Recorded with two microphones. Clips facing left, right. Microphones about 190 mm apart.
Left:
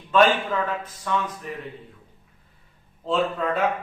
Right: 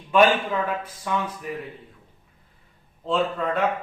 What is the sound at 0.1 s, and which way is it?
Speech, 10° right (ahead or behind).